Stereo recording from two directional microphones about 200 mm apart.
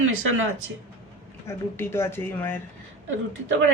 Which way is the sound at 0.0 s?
90° right.